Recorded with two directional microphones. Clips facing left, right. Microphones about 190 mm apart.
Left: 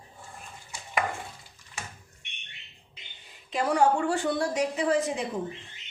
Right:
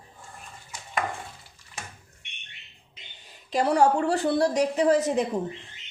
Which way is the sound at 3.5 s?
40° right (ahead or behind).